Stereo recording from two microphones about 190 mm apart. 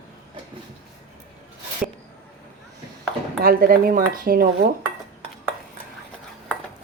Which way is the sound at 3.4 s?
50° right (ahead or behind).